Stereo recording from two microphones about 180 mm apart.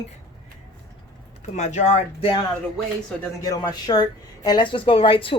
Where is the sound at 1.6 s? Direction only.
40° left (ahead or behind).